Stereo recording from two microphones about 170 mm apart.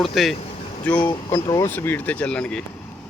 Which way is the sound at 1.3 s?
20° left (ahead or behind).